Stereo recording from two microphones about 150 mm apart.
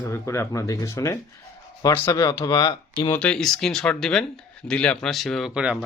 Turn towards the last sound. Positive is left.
turn(degrees=-5)  # may be behind; listen again after turning